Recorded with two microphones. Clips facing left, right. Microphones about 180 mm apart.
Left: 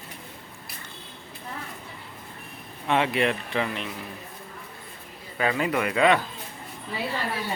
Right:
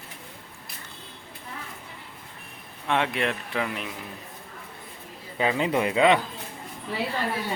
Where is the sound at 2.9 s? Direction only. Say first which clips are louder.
Left 2 dB; centre (ahead or behind).